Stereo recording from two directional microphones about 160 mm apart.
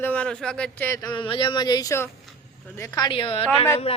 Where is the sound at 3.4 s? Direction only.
15° left (ahead or behind).